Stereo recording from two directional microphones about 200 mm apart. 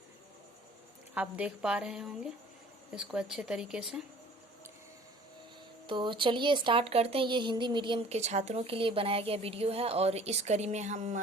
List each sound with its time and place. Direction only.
1.1 s a woman's voice: 5° right (ahead or behind)
5.9 s speech: 25° right (ahead or behind)